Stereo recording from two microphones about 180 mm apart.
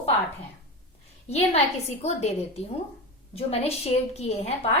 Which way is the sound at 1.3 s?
35° left (ahead or behind).